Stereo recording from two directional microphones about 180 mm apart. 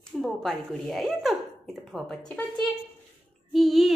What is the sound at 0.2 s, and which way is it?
Speech, centre (ahead or behind).